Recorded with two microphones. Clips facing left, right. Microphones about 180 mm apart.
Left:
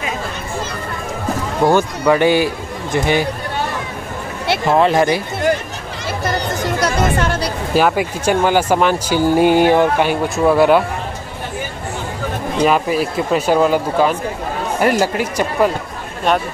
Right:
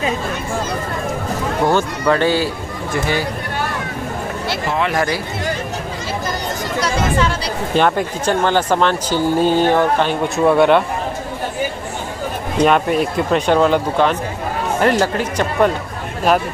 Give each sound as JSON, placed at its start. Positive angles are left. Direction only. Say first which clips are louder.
{"t": 1.7, "sound": "speech", "louder": "left 3 dB", "side_deg": 10}
{"t": 4.9, "sound": "speech", "louder": "left 4 dB", "side_deg": 20}
{"t": 6.8, "sound": "chatter", "louder": "right 1 dB", "side_deg": 50}
{"t": 7.7, "sound": "speech", "louder": "left 1 dB", "side_deg": 5}
{"t": 12.6, "sound": "speech", "louder": "right 1 dB", "side_deg": 0}